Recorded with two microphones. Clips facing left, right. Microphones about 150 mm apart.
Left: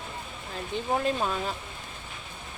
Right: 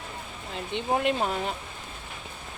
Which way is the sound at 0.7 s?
90° right.